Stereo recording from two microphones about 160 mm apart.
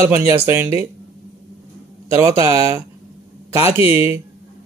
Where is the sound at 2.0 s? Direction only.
15° right (ahead or behind).